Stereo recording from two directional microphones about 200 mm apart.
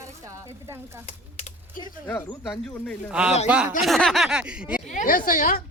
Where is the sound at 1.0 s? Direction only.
35° left (ahead or behind).